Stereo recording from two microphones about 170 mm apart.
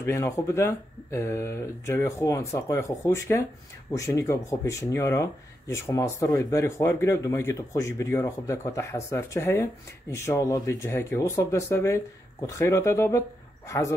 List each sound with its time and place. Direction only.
0.0 s speech: 15° left (ahead or behind)